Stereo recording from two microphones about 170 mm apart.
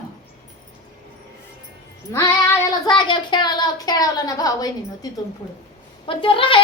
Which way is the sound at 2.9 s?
30° left (ahead or behind).